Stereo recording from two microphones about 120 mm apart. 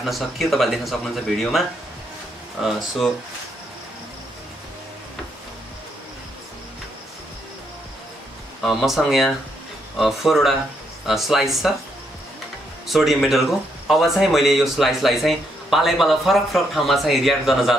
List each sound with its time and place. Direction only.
0.0 s speech: centre (ahead or behind)
8.6 s speech: centre (ahead or behind)
12.8 s speech: centre (ahead or behind)